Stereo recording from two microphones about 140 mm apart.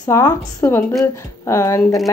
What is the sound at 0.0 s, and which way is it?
Speech, 20° left (ahead or behind).